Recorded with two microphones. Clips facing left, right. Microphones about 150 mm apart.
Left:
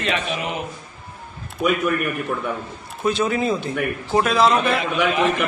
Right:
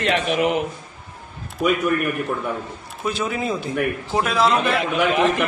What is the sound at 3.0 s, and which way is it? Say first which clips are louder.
A man's voice: left 4 dB; centre (ahead or behind).